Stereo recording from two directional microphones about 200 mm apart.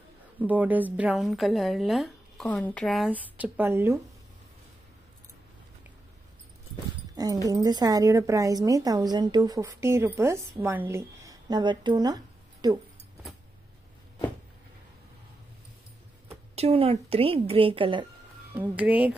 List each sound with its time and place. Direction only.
0.4 s speech: 10° right (ahead or behind)
7.4 s a woman's voice: 15° right (ahead or behind)
16.3 s a woman's voice: 30° right (ahead or behind)
18.5 s a woman's voice: 10° right (ahead or behind)